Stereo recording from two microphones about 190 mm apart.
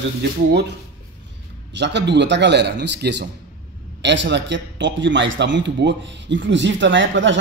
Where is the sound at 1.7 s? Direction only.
65° right (ahead or behind).